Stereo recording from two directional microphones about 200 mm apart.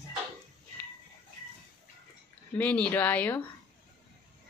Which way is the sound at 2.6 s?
5° left (ahead or behind).